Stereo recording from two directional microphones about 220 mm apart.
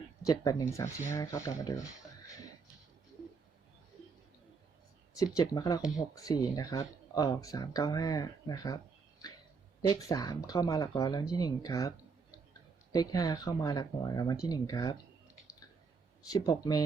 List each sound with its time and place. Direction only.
0.2 s speech: 15° left (ahead or behind)
5.1 s speech: 15° left (ahead or behind)
16.3 s speech: 15° left (ahead or behind)